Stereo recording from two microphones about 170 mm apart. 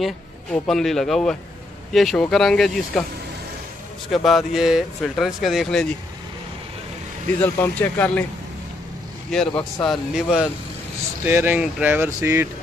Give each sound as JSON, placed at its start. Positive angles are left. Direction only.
{"t": 0.0, "sound": "speech", "side_deg": 5}
{"t": 4.1, "sound": "speech", "side_deg": 0}
{"t": 7.4, "sound": "speech", "side_deg": 10}
{"t": 9.5, "sound": "speech", "side_deg": 20}
{"t": 9.8, "sound": "speech", "side_deg": -5}